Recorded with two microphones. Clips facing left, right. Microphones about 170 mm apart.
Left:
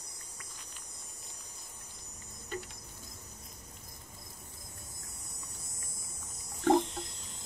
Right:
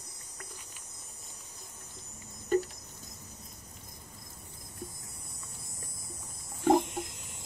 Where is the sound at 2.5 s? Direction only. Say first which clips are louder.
Right 13 dB; 45° right (ahead or behind).